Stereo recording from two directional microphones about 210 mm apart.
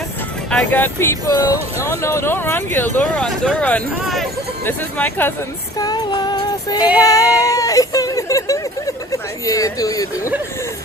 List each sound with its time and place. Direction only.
0.5 s speech: 10° left (ahead or behind)
5.8 s music: 20° left (ahead or behind)
7.0 s speech: 15° left (ahead or behind)